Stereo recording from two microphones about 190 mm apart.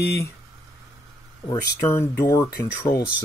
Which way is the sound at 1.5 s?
10° left (ahead or behind).